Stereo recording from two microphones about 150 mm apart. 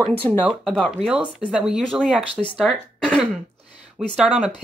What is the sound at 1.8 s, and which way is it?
Speech, 5° left (ahead or behind).